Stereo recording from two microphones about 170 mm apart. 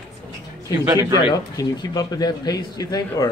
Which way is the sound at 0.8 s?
20° right (ahead or behind).